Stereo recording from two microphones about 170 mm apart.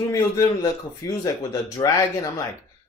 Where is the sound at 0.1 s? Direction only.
15° left (ahead or behind).